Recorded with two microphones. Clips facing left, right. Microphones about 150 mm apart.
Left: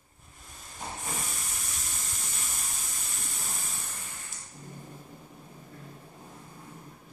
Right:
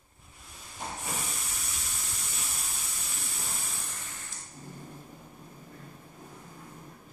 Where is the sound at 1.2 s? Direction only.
Centre (ahead or behind).